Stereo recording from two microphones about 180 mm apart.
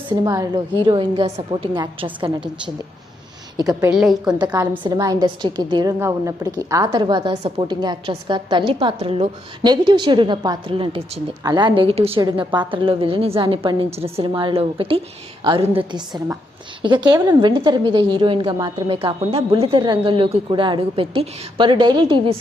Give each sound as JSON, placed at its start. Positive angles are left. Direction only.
{"t": 0.3, "sound": "a woman's voice", "side_deg": -20}
{"t": 3.6, "sound": "a woman's voice", "side_deg": -20}
{"t": 3.9, "sound": "a woman's voice", "side_deg": 0}
{"t": 4.5, "sound": "a woman's voice", "side_deg": -15}